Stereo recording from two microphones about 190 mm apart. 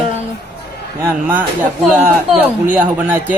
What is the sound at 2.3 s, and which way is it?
A man's voice, 10° right (ahead or behind).